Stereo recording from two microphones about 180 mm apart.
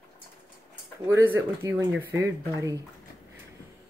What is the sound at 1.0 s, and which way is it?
Speech, 10° right (ahead or behind).